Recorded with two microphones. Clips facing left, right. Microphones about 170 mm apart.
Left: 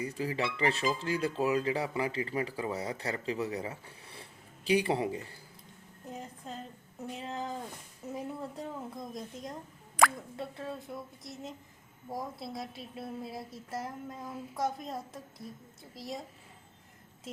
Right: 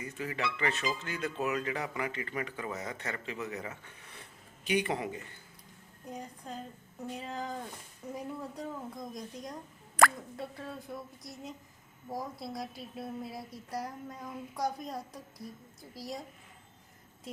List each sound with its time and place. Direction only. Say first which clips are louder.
0.0 s speech: left 3 dB; 35° left (ahead or behind)
6.1 s a woman's voice: even; centre (ahead or behind)